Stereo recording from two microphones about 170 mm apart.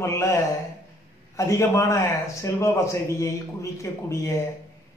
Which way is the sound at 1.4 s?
20° left (ahead or behind).